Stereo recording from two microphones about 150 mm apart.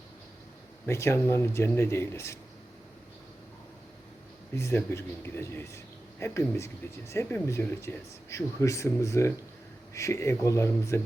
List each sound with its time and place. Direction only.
0.9 s a man's voice: 20° left (ahead or behind)
4.5 s a man's voice: 15° left (ahead or behind)